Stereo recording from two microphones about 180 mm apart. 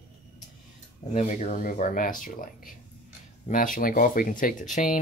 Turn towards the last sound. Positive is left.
turn(degrees=45)  # may be behind; listen again after turning